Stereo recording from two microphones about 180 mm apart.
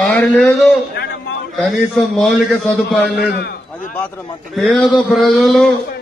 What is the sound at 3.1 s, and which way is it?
Speech, 60° left (ahead or behind).